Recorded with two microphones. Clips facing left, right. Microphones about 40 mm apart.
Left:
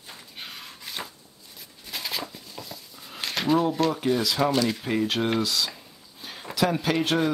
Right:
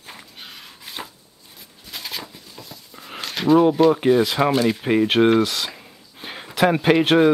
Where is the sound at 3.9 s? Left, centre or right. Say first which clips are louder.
Right 8 dB; right.